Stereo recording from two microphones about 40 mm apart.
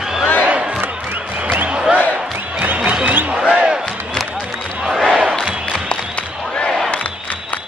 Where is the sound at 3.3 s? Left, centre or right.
Right.